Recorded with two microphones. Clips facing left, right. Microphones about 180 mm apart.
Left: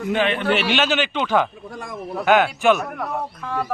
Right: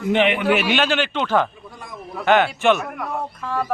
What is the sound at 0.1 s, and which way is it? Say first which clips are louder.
Speech: right 3 dB; 25° right (ahead or behind).